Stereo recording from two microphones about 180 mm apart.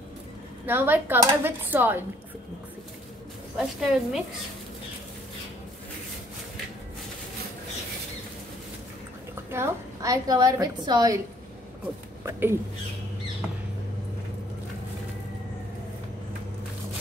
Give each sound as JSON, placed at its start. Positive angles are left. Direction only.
{"t": 0.7, "sound": "a woman's voice", "side_deg": -10}
{"t": 3.5, "sound": "a woman's voice", "side_deg": 0}
{"t": 9.5, "sound": "a woman's voice", "side_deg": -15}
{"t": 12.3, "sound": "a woman's voice", "side_deg": -15}